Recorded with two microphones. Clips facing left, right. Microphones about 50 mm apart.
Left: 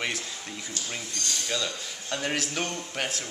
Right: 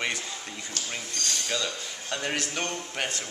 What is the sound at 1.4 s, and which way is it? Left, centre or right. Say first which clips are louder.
Speech: even; centre.